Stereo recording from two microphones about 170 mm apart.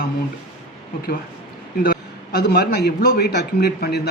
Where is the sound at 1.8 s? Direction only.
60° left (ahead or behind).